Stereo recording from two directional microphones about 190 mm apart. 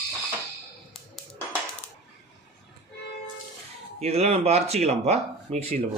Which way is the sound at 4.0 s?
35° right (ahead or behind).